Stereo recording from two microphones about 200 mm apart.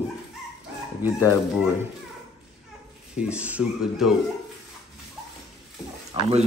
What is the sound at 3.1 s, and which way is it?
A man's voice, 5° right (ahead or behind).